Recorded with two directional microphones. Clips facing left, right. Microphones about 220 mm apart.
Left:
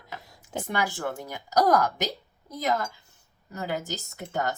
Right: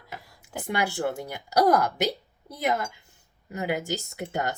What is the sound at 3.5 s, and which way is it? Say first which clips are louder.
Speech: right 3 dB; 15° right (ahead or behind).